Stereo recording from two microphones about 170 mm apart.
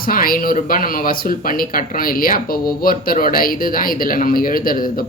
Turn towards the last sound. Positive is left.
turn(degrees=55)  # may be behind; listen again after turning